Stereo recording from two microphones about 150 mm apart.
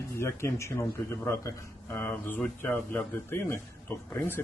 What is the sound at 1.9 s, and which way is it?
Speech, 10° left (ahead or behind).